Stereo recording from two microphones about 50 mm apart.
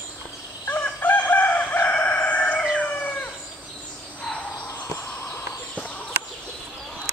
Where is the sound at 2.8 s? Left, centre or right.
Left.